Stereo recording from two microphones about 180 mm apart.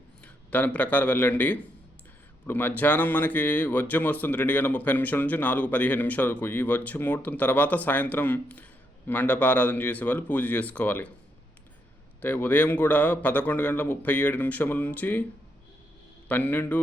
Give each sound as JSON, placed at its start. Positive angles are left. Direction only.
{"t": 0.5, "sound": "speech", "side_deg": 10}
{"t": 12.2, "sound": "speech", "side_deg": 10}
{"t": 16.3, "sound": "speech", "side_deg": 10}